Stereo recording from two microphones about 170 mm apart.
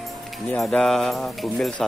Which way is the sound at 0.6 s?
Centre (ahead or behind).